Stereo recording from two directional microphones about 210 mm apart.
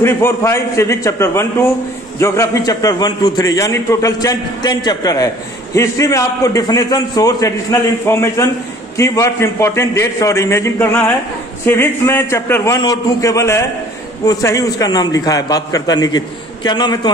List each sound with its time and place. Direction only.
0.0 s a man's voice: 10° left (ahead or behind)